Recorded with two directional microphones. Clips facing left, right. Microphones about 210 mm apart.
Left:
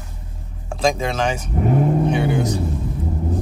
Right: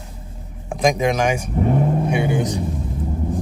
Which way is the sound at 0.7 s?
15° right (ahead or behind).